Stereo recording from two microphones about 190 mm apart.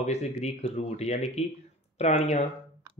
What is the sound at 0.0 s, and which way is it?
Speech, 35° left (ahead or behind).